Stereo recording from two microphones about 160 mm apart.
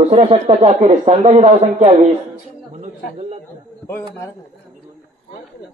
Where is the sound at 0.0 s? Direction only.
45° right (ahead or behind).